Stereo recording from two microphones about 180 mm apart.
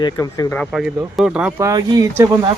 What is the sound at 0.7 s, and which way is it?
Speech, 5° right (ahead or behind).